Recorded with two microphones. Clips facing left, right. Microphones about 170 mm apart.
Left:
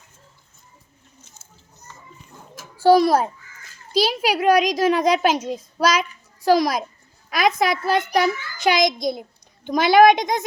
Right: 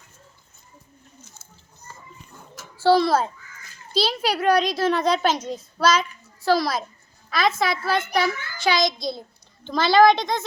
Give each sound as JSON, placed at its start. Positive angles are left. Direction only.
{"t": 2.7, "sound": "a child's voice", "side_deg": 15}